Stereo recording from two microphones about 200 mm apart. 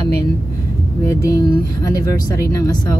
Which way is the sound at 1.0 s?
15° left (ahead or behind).